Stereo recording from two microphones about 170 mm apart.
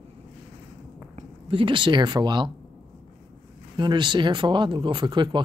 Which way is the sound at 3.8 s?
25° right (ahead or behind).